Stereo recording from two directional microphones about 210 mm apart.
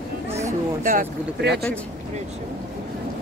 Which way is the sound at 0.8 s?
45° right (ahead or behind).